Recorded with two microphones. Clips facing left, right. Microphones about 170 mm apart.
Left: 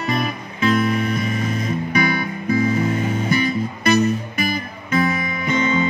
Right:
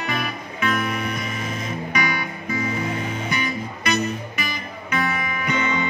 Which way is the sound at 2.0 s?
45° left (ahead or behind).